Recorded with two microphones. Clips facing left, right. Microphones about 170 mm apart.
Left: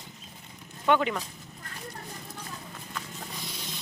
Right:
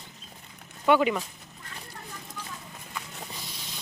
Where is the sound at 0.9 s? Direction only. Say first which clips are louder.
Right 3 dB; 10° right (ahead or behind).